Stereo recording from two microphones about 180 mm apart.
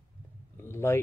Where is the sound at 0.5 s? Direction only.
15° left (ahead or behind).